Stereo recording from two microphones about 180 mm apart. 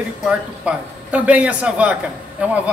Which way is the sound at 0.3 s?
5° right (ahead or behind).